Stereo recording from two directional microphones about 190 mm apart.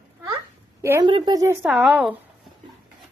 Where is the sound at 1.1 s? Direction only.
25° right (ahead or behind).